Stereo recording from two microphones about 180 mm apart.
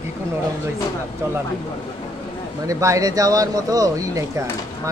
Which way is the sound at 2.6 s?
15° right (ahead or behind).